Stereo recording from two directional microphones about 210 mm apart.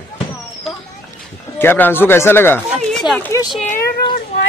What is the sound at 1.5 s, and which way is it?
Speech, 10° left (ahead or behind).